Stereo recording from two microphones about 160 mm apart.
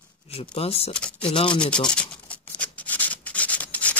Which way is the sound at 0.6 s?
40° left (ahead or behind).